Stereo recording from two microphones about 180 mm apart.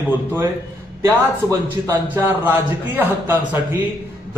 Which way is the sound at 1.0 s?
15° right (ahead or behind).